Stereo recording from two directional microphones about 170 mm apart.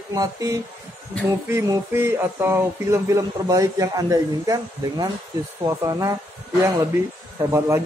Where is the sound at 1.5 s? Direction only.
15° right (ahead or behind).